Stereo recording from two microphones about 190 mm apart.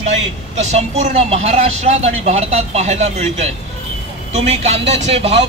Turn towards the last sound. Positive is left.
turn(degrees=-30)  # may be behind; listen again after turning